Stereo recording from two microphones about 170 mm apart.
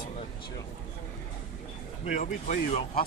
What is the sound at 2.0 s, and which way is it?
Speech, 45° left (ahead or behind).